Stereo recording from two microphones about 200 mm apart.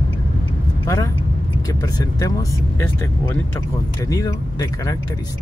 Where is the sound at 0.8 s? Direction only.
15° left (ahead or behind).